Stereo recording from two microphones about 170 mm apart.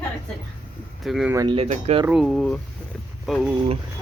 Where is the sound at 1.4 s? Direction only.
35° right (ahead or behind).